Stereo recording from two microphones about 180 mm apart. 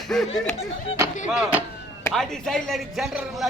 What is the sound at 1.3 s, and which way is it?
A man's voice, 5° right (ahead or behind).